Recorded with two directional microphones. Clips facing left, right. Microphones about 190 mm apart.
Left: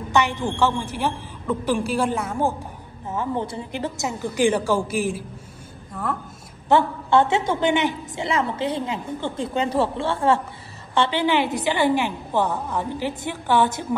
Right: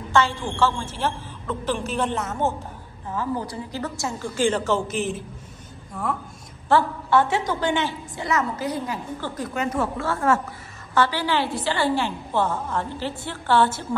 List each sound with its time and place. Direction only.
0.1 s a woman's voice: 15° left (ahead or behind)
3.1 s a woman's voice: 25° left (ahead or behind); by 6.1 s centre (ahead or behind)
6.7 s a woman's voice: 25° left (ahead or behind)